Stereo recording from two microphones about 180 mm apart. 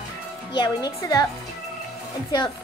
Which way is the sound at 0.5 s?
25° left (ahead or behind).